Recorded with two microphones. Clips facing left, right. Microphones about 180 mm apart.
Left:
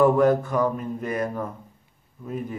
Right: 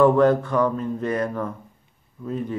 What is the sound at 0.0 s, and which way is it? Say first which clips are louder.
A man's voice: right 2 dB; 10° left (ahead or behind).